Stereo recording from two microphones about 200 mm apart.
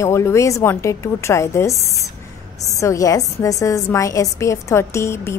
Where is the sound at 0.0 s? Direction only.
15° left (ahead or behind).